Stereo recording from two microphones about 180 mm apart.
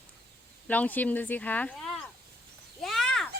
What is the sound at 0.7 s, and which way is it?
Speech, 10° left (ahead or behind).